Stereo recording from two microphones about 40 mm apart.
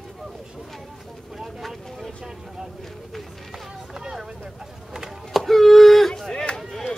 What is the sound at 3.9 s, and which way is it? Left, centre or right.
Vehicle, centre.